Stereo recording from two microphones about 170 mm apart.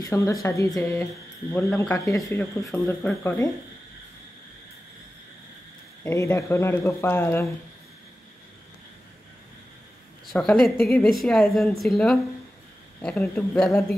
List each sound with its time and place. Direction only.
0.0 s speech: 15° left (ahead or behind)
6.0 s speech: 15° left (ahead or behind)
10.3 s a woman's voice: 5° left (ahead or behind)